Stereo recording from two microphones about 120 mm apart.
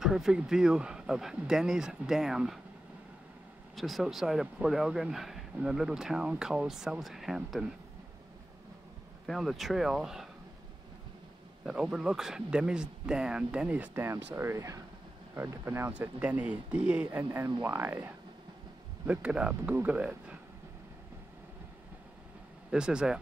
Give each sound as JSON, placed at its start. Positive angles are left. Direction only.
{"t": 0.0, "sound": "speech", "side_deg": -5}
{"t": 3.7, "sound": "speech", "side_deg": 0}
{"t": 9.2, "sound": "speech", "side_deg": 0}
{"t": 11.6, "sound": "speech", "side_deg": -5}
{"t": 22.7, "sound": "speech", "side_deg": -5}